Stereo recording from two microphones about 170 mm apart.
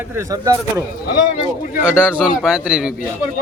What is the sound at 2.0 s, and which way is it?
Speech, centre (ahead or behind).